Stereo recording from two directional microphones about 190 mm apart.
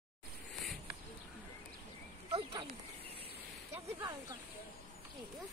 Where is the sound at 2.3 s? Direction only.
25° right (ahead or behind).